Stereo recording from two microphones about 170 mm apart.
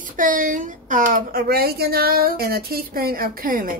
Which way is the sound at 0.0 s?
50° right (ahead or behind).